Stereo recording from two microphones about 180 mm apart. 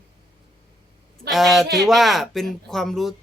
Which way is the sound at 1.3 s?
Centre (ahead or behind).